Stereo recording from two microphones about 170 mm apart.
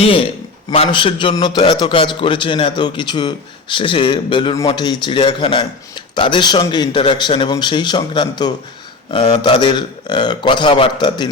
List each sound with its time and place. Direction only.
0.0 s a man's voice: 35° left (ahead or behind)